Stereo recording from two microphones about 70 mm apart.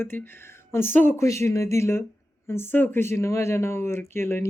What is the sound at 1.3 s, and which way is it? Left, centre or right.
Speech, left.